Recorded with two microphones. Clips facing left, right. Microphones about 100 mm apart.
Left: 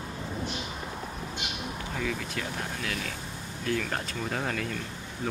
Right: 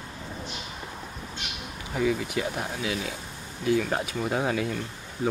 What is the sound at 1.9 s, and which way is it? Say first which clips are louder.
Speech: right 8 dB; 15° right (ahead or behind).